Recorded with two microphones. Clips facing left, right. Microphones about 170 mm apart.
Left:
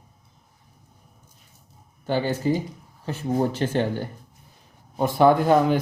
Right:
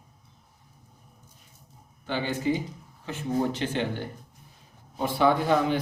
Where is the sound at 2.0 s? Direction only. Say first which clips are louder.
Left 4 dB; 40° left (ahead or behind).